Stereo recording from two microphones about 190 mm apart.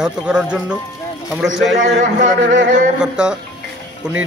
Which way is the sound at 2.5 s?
65° right (ahead or behind).